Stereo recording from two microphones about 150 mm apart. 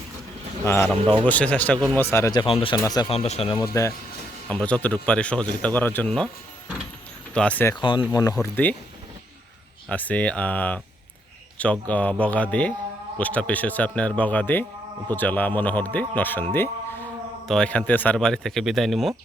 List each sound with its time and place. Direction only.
0.6 s a man's voice: 15° left (ahead or behind)
2.4 s speech: 35° left (ahead or behind)
2.7 s speech: 25° left (ahead or behind)
3.1 s speech: 45° left (ahead or behind)
3.5 s speech: 20° left (ahead or behind)
4.4 s speech: 10° left (ahead or behind)
7.3 s speech: 10° left (ahead or behind)
7.8 s speech: 30° left (ahead or behind)
9.9 s speech: 10° left (ahead or behind)